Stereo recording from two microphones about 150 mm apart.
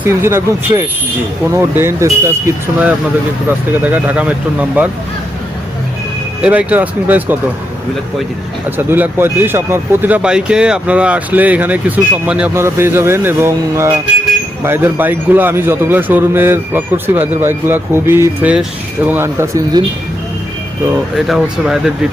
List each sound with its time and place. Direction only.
0.0 s speech: 15° right (ahead or behind)
3.8 s speech: 10° right (ahead or behind)
6.4 s speech: 10° right (ahead or behind)
8.9 s speech: 15° right (ahead or behind)
21.2 s speech: 5° right (ahead or behind)